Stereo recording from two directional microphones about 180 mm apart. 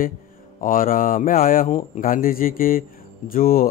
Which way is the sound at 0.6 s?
50° left (ahead or behind).